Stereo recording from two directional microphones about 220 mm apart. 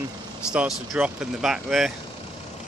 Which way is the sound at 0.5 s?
5° right (ahead or behind).